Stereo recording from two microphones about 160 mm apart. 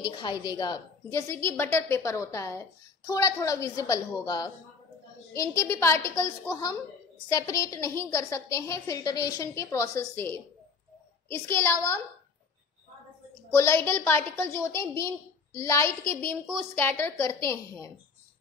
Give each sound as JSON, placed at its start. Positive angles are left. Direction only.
{"t": 0.0, "sound": "a woman's voice", "side_deg": 25}
{"t": 1.3, "sound": "a woman's voice", "side_deg": 15}
{"t": 13.6, "sound": "a woman's voice", "side_deg": 15}